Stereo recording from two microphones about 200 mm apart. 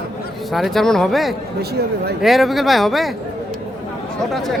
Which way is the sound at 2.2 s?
Centre (ahead or behind).